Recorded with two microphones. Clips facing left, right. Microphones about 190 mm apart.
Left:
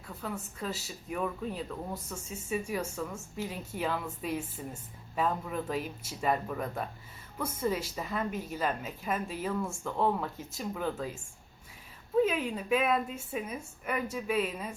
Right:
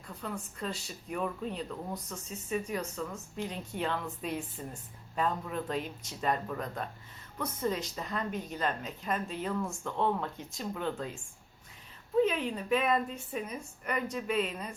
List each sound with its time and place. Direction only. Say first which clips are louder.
0.2 s a woman's voice: left 1 dB; 5° left (ahead or behind)
12.2 s a woman's voice: right 1 dB; 5° left (ahead or behind)